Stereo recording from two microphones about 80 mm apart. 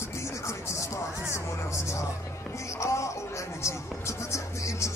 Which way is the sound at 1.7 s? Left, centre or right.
Left.